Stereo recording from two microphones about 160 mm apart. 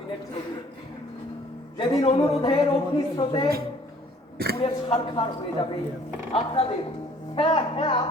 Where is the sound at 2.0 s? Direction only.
40° left (ahead or behind).